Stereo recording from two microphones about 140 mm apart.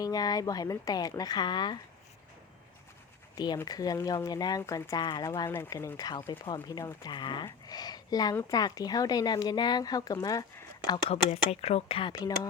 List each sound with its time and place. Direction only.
0.0 s speech: 25° left (ahead or behind)
3.3 s speech: 30° left (ahead or behind)
5.0 s speech: 35° left (ahead or behind)
5.5 s speech: 20° left (ahead or behind)
11.1 s speech: 45° left (ahead or behind); by 12.5 s 30° left (ahead or behind)